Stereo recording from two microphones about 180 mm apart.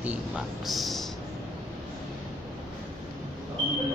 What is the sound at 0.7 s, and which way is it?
Speech, centre (ahead or behind).